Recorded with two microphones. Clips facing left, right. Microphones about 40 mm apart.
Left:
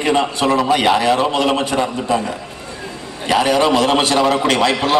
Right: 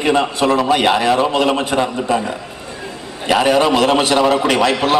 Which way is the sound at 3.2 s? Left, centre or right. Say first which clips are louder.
Right 1 dB; centre.